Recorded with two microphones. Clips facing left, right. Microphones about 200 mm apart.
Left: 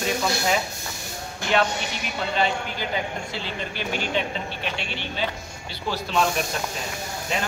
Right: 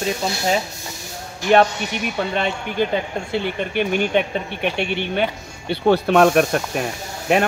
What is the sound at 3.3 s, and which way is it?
Speech, 60° right (ahead or behind).